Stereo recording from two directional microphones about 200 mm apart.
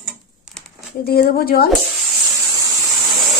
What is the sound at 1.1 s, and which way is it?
Speech, 50° left (ahead or behind).